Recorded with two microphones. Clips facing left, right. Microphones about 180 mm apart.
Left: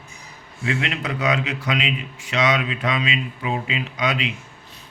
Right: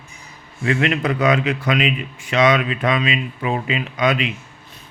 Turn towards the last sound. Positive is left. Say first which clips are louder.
# right 5 dB
turn(degrees=-50)  # may be behind; listen again after turning